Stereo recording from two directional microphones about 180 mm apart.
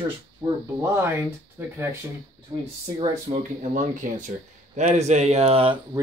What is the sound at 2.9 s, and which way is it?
Speech, 35° right (ahead or behind).